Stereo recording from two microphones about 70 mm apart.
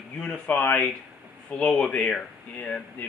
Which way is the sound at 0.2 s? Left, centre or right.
Centre.